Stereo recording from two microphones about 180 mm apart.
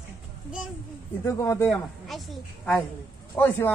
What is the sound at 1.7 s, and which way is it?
A woman's voice, centre (ahead or behind).